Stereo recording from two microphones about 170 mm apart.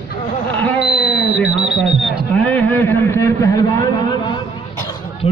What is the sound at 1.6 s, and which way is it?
Speech, 10° right (ahead or behind).